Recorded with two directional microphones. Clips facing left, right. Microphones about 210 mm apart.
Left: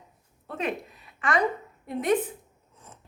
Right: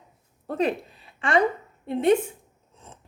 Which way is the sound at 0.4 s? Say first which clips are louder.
Right 6 dB; 35° right (ahead or behind).